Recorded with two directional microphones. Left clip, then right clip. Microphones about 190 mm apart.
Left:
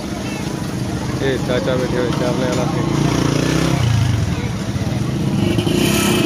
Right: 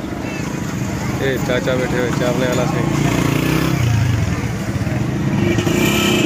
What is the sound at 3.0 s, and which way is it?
Vehicle, 45° right (ahead or behind).